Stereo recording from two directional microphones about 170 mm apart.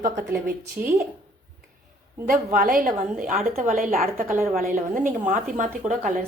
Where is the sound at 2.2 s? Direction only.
55° right (ahead or behind).